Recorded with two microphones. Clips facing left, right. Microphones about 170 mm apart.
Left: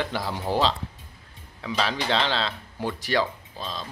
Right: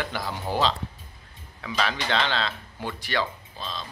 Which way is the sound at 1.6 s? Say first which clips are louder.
Left 1 dB; 25° left (ahead or behind).